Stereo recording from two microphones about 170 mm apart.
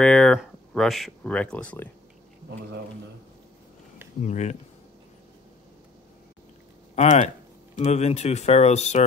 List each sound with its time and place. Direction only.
0.0 s speech: 5° left (ahead or behind)
4.2 s speech: 45° left (ahead or behind)
7.0 s speech: 40° left (ahead or behind)